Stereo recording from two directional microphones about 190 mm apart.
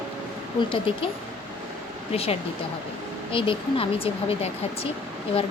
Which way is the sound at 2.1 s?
30° left (ahead or behind).